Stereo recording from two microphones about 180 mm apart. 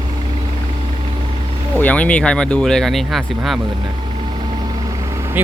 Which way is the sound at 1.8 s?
10° left (ahead or behind).